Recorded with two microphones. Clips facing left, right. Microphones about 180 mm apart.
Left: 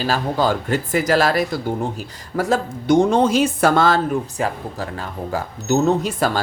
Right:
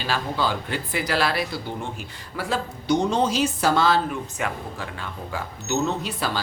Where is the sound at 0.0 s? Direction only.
45° left (ahead or behind).